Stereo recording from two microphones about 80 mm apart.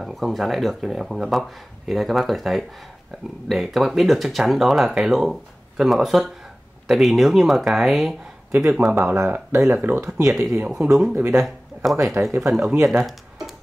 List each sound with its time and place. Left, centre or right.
0.0 s speech: centre
8.6 s speech: centre
9.7 s speech: right
10.2 s speech: centre
12.8 s music: centre